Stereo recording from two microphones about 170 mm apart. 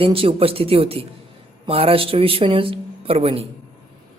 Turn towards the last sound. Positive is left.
turn(degrees=-35)  # may be behind; listen again after turning